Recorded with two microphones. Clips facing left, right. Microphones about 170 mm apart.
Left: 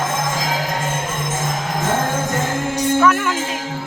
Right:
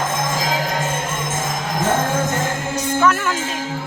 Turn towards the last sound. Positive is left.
turn(degrees=10)  # may be behind; listen again after turning